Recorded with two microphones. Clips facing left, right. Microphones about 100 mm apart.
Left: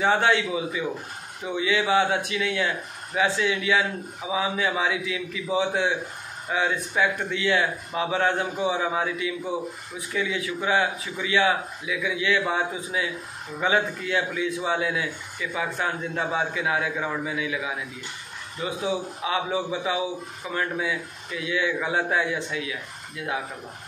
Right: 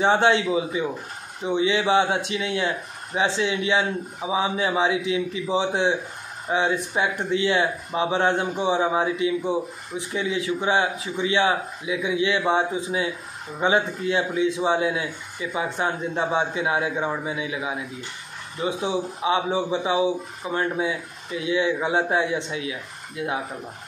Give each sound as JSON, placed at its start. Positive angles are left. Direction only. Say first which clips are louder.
{"t": 0.0, "sound": "a man's voice", "louder": "right 3 dB", "side_deg": -25}